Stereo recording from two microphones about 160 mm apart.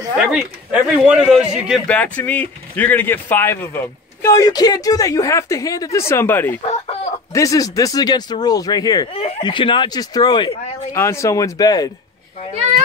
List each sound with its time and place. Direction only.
0.3 s a man's voice: 5° right (ahead or behind)
1.9 s speech: 10° left (ahead or behind)